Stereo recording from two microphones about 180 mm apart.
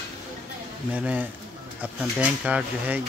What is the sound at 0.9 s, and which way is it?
Speech, 10° right (ahead or behind).